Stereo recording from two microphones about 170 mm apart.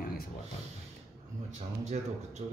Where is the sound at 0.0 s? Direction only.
60° left (ahead or behind).